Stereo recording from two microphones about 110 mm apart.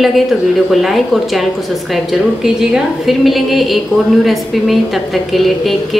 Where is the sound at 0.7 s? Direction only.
Centre (ahead or behind).